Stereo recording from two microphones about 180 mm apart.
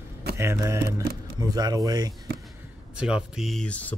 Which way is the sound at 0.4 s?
15° right (ahead or behind).